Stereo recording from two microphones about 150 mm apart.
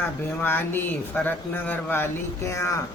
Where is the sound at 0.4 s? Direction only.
15° left (ahead or behind).